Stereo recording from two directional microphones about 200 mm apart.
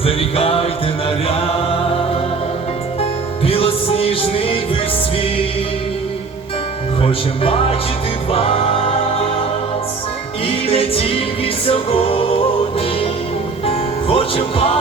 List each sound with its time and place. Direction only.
0.0 s music: 30° left (ahead or behind)
1.3 s mantra: 30° left (ahead or behind)
3.0 s music: 30° left (ahead or behind)
7.0 s music: 25° left (ahead or behind)
8.3 s singing: 30° left (ahead or behind)
10.4 s music: 30° left (ahead or behind)
13.7 s music: 30° left (ahead or behind)